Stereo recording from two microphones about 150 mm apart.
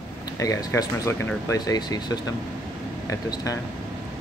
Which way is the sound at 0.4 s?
25° left (ahead or behind).